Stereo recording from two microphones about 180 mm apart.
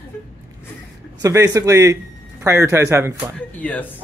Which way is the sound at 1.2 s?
20° right (ahead or behind).